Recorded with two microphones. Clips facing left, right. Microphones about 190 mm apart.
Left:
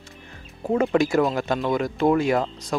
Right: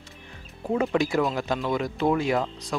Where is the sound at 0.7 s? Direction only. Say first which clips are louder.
Left 4 dB; 50° left (ahead or behind).